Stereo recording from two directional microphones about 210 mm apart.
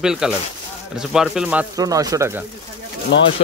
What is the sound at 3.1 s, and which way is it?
Speech, 55° left (ahead or behind).